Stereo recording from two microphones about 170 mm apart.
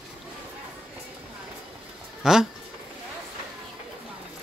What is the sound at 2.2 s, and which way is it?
Speech, 5° right (ahead or behind).